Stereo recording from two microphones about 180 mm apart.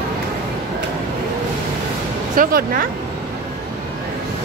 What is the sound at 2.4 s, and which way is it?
Speech, 55° right (ahead or behind).